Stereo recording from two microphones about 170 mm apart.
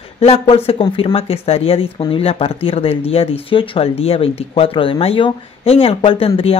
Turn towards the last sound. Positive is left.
turn(degrees=35)  # may be behind; listen again after turning